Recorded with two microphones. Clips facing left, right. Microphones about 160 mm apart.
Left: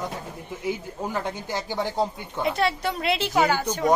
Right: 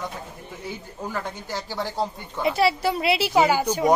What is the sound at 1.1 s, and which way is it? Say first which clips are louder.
A man's voice: left 1 dB; 15° left (ahead or behind).